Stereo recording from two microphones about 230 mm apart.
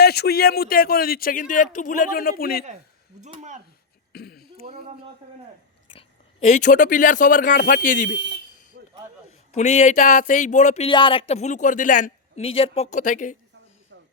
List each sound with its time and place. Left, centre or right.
0.0 s speech: left
3.2 s speech: right
4.1 s throat clearing: left
4.6 s speech: right
6.5 s speech: left
9.5 s speech: left